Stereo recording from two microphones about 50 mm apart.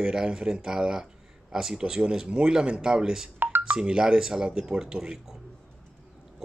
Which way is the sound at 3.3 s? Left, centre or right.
Right.